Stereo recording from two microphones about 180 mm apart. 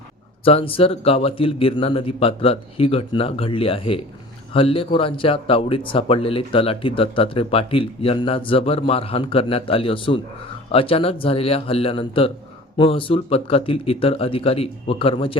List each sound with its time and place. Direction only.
0.4 s speech: 30° left (ahead or behind)